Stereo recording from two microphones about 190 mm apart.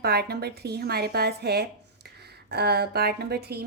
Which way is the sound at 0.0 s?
55° right (ahead or behind).